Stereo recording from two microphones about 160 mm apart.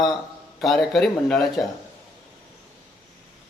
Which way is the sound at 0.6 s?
Centre (ahead or behind).